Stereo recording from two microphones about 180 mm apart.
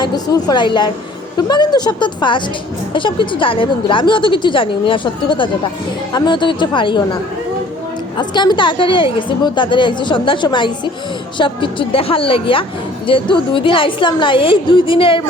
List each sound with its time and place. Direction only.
0.0 s a woman's voice: 25° left (ahead or behind)
8.2 s a woman's voice: 25° left (ahead or behind)